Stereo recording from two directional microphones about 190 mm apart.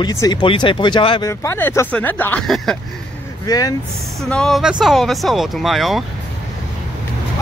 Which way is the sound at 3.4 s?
20° left (ahead or behind).